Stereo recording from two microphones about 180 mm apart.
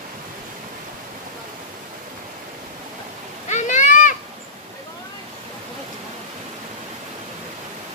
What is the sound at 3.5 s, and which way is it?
Children playing, 40° left (ahead or behind).